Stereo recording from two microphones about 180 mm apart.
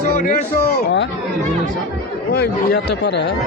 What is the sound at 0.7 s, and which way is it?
Speech, 70° left (ahead or behind).